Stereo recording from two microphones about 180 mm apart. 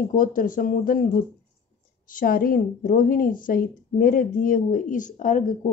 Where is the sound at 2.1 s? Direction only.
50° left (ahead or behind).